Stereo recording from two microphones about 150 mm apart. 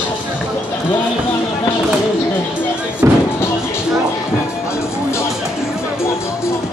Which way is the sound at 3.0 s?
15° right (ahead or behind).